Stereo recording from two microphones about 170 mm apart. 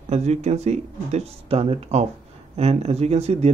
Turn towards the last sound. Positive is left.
turn(degrees=-40)  # may be behind; listen again after turning